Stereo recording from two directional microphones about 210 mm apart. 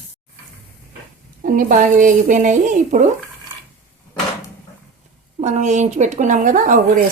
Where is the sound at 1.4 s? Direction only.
40° right (ahead or behind).